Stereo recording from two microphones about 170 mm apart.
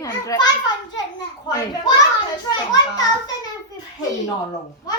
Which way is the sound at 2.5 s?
25° left (ahead or behind).